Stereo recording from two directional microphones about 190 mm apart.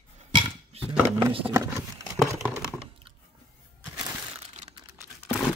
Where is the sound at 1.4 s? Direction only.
15° right (ahead or behind).